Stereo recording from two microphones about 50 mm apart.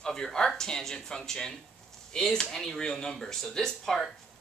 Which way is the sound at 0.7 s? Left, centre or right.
Centre.